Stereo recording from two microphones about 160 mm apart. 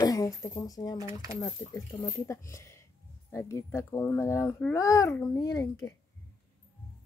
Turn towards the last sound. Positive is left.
turn(degrees=20)  # may be behind; listen again after turning